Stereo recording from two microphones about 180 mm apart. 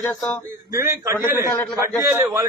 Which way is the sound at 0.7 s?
15° right (ahead or behind).